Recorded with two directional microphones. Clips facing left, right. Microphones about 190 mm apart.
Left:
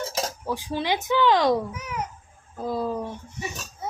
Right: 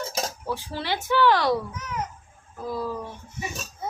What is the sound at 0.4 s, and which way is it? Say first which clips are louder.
A woman's voice: left 3 dB; 15° left (ahead or behind).